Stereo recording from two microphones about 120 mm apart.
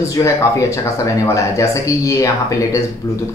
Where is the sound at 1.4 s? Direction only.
25° left (ahead or behind).